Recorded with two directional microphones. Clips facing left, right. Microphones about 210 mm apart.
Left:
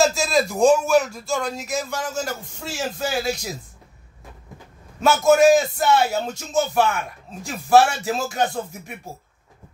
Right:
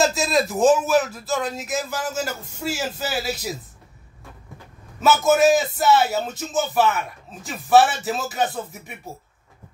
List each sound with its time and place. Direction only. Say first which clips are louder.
0.0 s a man's voice: left 1 dB; centre (ahead or behind)
5.0 s a man's voice: left 2 dB; 5° right (ahead or behind)